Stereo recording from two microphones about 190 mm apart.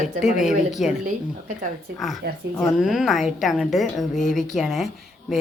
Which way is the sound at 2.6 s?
5° right (ahead or behind).